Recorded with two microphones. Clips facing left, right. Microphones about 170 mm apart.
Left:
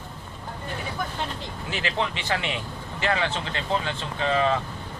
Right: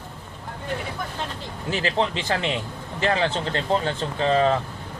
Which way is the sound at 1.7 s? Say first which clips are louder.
Right 5 dB; 35° right (ahead or behind).